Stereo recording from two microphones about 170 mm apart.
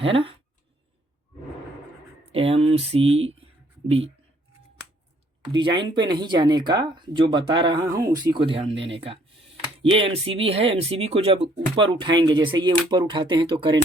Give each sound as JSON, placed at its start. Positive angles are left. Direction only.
{"t": 0.0, "sound": "speech", "side_deg": -35}
{"t": 2.3, "sound": "speech", "side_deg": -35}
{"t": 5.4, "sound": "speech", "side_deg": -25}
{"t": 8.7, "sound": "speech", "side_deg": -90}
{"t": 9.9, "sound": "speech", "side_deg": -35}